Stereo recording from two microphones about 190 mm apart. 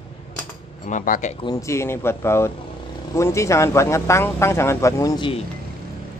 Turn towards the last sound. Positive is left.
turn(degrees=25)  # may be behind; listen again after turning